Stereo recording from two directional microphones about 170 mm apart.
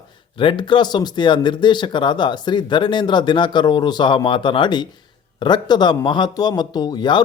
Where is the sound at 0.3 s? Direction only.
30° left (ahead or behind).